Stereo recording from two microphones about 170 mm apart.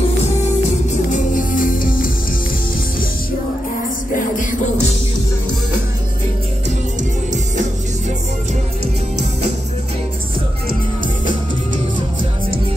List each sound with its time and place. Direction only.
0.2 s music: 40° left (ahead or behind)
4.1 s music: 50° left (ahead or behind)